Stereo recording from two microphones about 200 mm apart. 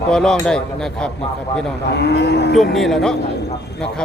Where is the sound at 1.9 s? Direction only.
55° left (ahead or behind).